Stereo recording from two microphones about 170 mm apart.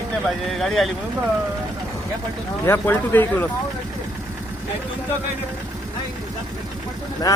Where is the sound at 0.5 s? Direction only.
Centre (ahead or behind).